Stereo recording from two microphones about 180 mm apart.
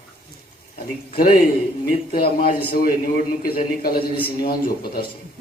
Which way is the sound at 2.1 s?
55° left (ahead or behind).